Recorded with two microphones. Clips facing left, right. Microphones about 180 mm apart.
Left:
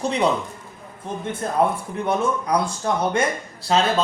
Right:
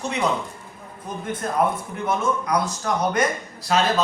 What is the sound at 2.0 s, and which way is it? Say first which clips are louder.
Speech: left 1 dB; 30° left (ahead or behind).